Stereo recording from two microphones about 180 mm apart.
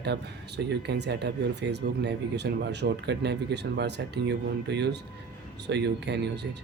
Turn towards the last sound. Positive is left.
turn(degrees=-70)  # may be behind; listen again after turning